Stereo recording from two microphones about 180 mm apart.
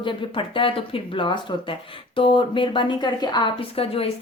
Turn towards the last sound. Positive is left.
turn(degrees=30)  # may be behind; listen again after turning